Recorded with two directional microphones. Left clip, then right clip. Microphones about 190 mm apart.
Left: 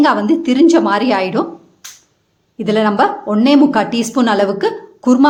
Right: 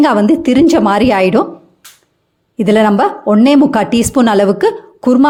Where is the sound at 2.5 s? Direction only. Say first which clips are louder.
Right 3 dB; 35° right (ahead or behind).